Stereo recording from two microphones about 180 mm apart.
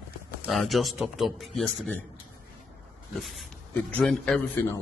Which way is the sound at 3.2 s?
Centre (ahead or behind).